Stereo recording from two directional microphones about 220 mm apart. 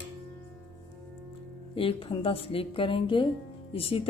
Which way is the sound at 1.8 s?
25° left (ahead or behind).